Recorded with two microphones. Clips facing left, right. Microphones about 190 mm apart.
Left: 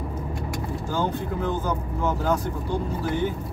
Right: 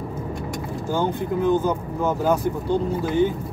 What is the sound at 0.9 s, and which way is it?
Speech, 20° right (ahead or behind).